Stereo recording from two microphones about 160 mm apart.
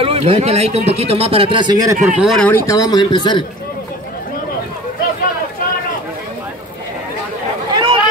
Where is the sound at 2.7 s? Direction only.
25° left (ahead or behind).